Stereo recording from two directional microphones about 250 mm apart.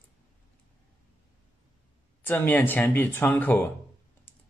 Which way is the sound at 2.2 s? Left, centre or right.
Centre.